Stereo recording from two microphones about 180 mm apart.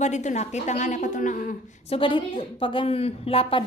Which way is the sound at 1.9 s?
30° left (ahead or behind).